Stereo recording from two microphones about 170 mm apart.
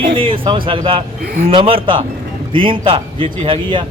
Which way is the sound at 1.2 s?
60° right (ahead or behind).